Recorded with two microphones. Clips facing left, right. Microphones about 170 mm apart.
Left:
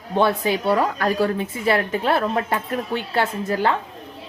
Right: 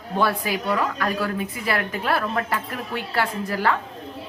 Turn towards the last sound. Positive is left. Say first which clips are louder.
# left 2 dB
turn(degrees=25)  # may be behind; listen again after turning